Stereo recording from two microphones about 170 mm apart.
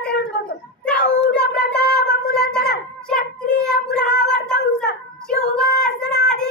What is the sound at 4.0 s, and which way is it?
Music, 80° left.